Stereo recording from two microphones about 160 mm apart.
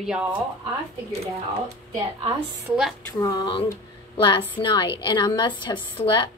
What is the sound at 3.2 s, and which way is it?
A woman's voice, 25° left (ahead or behind).